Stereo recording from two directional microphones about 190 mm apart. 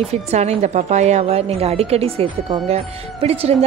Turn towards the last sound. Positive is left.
turn(degrees=-30)  # may be behind; listen again after turning